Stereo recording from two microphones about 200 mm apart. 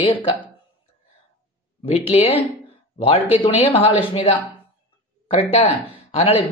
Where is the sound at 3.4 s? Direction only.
30° left (ahead or behind).